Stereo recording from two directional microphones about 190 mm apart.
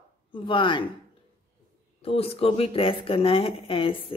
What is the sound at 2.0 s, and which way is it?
Speech, 30° left (ahead or behind).